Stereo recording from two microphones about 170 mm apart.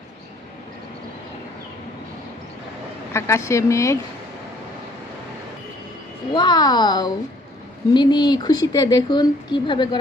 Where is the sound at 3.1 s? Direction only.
15° left (ahead or behind).